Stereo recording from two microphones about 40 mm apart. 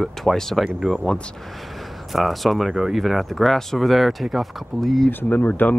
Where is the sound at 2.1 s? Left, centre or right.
Centre.